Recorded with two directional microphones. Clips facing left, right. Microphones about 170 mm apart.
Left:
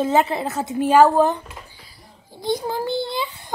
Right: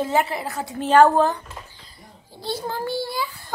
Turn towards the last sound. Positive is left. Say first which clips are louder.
# left 2 dB
turn(degrees=20)  # may be behind; listen again after turning